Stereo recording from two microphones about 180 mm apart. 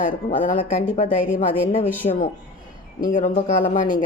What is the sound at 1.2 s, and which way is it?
Speech, 5° right (ahead or behind).